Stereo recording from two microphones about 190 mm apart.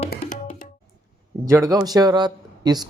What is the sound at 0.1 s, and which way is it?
Music, 45° left (ahead or behind).